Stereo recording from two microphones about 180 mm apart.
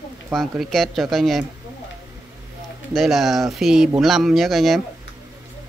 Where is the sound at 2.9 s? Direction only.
Centre (ahead or behind).